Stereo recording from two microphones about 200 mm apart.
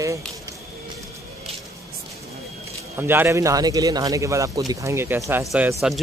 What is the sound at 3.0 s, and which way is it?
A man's voice, 10° right (ahead or behind).